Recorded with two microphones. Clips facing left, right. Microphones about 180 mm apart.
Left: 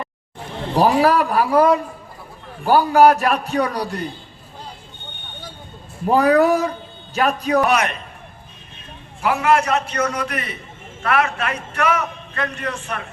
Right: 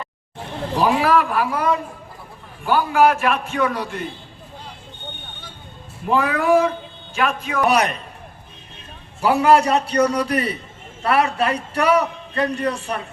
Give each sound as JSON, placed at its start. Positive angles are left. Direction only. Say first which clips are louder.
{"t": 0.8, "sound": "a man's voice", "louder": "left 2 dB", "side_deg": 40}
{"t": 2.6, "sound": "a man's voice", "louder": "left 4 dB", "side_deg": 40}
{"t": 6.1, "sound": "a man's voice", "louder": "left 3 dB", "side_deg": 40}
{"t": 7.7, "sound": "a man's voice", "louder": "right 1 dB", "side_deg": -35}
{"t": 9.2, "sound": "a man's voice", "louder": "right 3 dB", "side_deg": -35}